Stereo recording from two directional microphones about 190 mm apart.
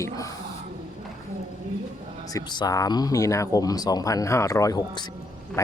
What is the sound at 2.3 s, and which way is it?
Speech, 20° left (ahead or behind).